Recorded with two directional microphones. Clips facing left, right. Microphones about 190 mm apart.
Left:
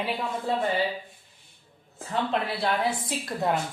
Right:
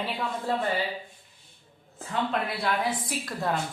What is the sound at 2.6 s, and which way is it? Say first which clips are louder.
Speech: left 2 dB; 30° left (ahead or behind).